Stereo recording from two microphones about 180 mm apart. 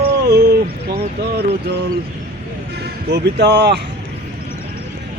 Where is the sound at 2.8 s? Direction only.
65° right (ahead or behind).